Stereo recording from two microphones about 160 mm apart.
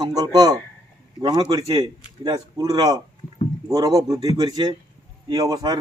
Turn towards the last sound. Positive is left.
turn(degrees=-25)  # may be behind; listen again after turning